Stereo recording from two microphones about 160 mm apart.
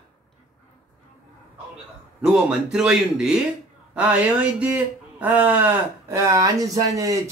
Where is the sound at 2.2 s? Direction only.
5° right (ahead or behind).